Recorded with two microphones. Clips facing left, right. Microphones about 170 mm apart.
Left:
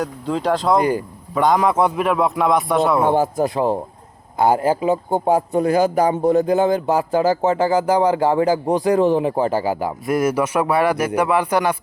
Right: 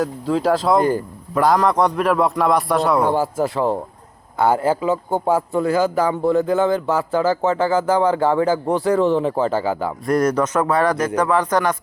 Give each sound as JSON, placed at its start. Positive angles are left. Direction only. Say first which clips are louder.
{"t": 0.0, "sound": "speech", "louder": "right 2 dB", "side_deg": 0}
{"t": 0.8, "sound": "a man's voice", "louder": "right 1 dB", "side_deg": 15}
{"t": 1.3, "sound": "a man's voice", "louder": "even", "side_deg": 0}
{"t": 3.0, "sound": "a man's voice", "louder": "left 1 dB", "side_deg": 20}